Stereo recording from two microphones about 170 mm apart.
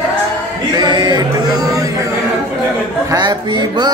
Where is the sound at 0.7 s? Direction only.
25° right (ahead or behind).